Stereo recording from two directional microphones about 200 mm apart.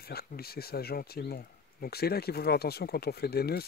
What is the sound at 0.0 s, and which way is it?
Speech, 50° left (ahead or behind).